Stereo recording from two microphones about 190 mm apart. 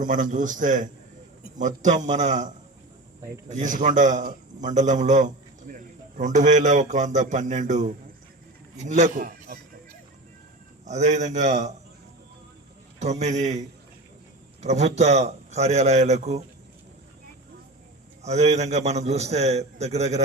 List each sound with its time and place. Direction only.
0.0 s a man's voice: 40° right (ahead or behind)
3.5 s a man's voice: 40° right (ahead or behind)
10.8 s a man's voice: 35° right (ahead or behind)
13.0 s a man's voice: 35° right (ahead or behind)
18.2 s a man's voice: 35° right (ahead or behind)